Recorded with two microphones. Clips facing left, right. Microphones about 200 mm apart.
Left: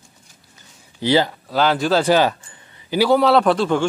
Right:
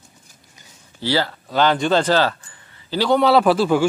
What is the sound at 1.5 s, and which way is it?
Speech, 5° left (ahead or behind).